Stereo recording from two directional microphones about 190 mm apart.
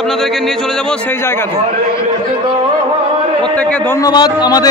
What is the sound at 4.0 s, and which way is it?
Speech, 20° left (ahead or behind).